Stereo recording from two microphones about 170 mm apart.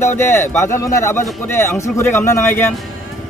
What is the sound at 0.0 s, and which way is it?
Speech, 15° left (ahead or behind).